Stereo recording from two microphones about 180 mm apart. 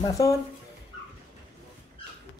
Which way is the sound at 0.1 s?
20° left (ahead or behind).